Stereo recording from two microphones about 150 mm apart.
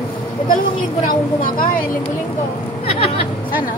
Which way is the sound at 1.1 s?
70° left (ahead or behind).